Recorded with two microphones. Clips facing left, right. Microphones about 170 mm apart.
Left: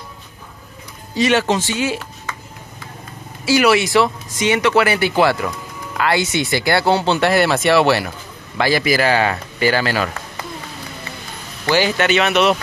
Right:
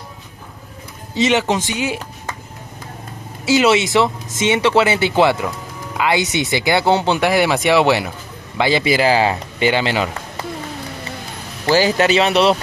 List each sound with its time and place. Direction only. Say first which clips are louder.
1.1 s speech: even; 20° right (ahead or behind)
3.4 s speech: even; 20° right (ahead or behind)
11.6 s speech: right 2 dB; 35° right (ahead or behind)